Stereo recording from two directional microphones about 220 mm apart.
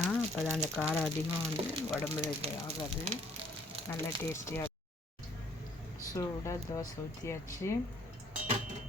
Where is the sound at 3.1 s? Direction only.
30° right (ahead or behind).